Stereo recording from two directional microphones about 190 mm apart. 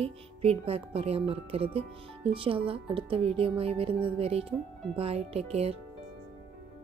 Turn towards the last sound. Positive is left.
turn(degrees=-30)  # may be behind; listen again after turning